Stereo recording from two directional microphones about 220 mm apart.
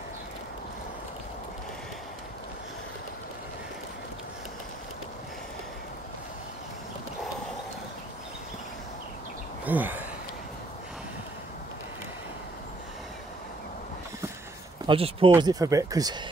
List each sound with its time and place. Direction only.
9.7 s speech: 10° right (ahead or behind)
14.9 s speech: 25° right (ahead or behind)
15.3 s speech: 15° right (ahead or behind)